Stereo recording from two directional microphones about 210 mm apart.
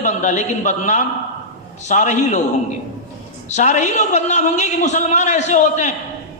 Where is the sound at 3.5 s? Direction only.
35° left (ahead or behind).